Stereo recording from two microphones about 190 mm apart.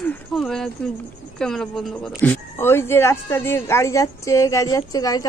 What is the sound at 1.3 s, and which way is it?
Speech, 5° left (ahead or behind).